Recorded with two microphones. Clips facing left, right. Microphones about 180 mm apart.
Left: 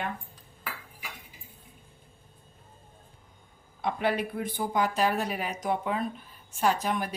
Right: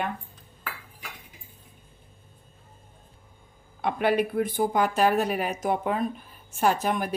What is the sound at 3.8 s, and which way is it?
A woman's voice, 60° right (ahead or behind).